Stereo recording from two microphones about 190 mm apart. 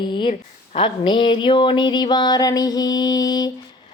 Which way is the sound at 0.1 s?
25° left (ahead or behind).